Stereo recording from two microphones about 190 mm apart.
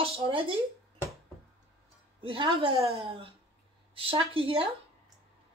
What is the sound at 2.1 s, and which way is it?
A woman's voice, 25° right (ahead or behind).